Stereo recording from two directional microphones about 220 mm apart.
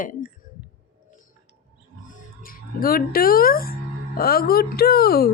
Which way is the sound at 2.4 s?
40° left (ahead or behind).